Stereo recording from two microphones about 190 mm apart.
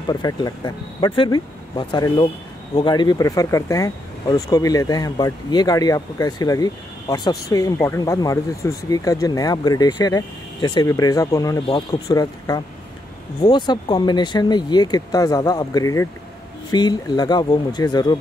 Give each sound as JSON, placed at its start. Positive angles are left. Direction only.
{"t": 0.1, "sound": "speech", "side_deg": 20}